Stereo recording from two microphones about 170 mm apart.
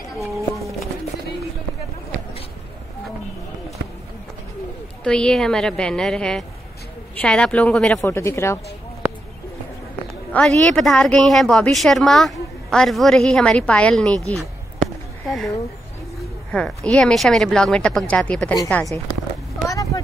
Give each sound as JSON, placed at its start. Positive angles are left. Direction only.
{"t": 5.0, "sound": "a woman's voice", "side_deg": 5}
{"t": 10.3, "sound": "a woman's voice", "side_deg": 5}
{"t": 16.5, "sound": "a woman's voice", "side_deg": 5}
{"t": 19.7, "sound": "vehicle", "side_deg": 20}